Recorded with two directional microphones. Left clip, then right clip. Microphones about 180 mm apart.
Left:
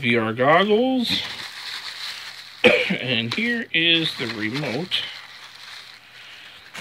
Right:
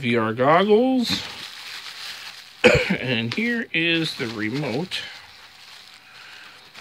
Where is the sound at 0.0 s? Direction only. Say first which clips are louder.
Left 1 dB; 10° right (ahead or behind).